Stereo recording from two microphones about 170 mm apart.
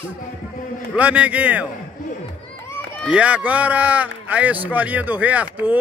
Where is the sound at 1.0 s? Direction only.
10° right (ahead or behind).